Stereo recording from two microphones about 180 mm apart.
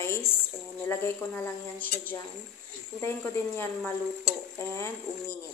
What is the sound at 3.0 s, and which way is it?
Speech, 15° left (ahead or behind).